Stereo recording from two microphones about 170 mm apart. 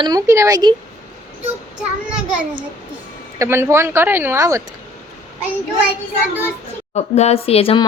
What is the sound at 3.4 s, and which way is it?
Speech, 15° right (ahead or behind).